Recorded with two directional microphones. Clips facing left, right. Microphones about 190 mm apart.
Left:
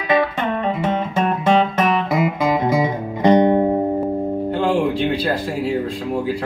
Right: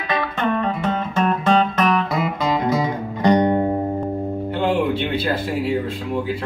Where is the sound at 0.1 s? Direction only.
15° left (ahead or behind).